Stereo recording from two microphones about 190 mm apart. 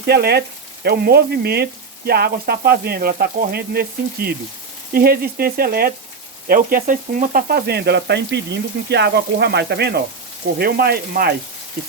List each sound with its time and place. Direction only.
0.0 s sizzle: 60° right (ahead or behind)
4.9 s speech: 55° right (ahead or behind)
6.5 s sizzle: 50° right (ahead or behind)
10.6 s speech: 55° right (ahead or behind)